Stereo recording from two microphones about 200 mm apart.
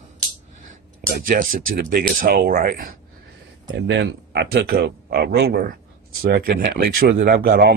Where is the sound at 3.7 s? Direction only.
60° right (ahead or behind).